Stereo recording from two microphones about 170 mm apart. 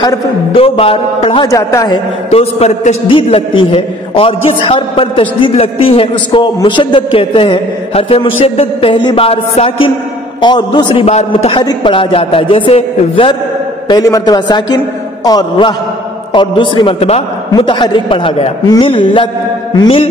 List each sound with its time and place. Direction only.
0.0 s a man's voice: 30° left (ahead or behind)
1.5 s a man's voice: 20° left (ahead or behind)
2.3 s a man's voice: 40° left (ahead or behind)
13.8 s a man's voice: 20° left (ahead or behind)